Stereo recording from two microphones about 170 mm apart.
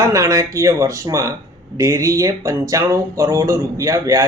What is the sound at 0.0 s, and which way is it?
Speech, 20° right (ahead or behind).